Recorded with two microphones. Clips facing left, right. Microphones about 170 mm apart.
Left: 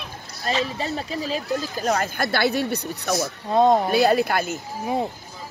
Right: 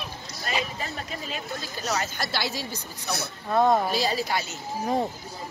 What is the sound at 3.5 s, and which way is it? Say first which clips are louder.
Speech: left 4 dB; 20° left (ahead or behind).